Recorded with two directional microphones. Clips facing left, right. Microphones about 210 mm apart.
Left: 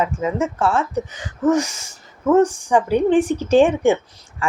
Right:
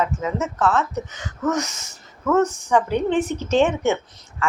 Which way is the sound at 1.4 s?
30° left (ahead or behind).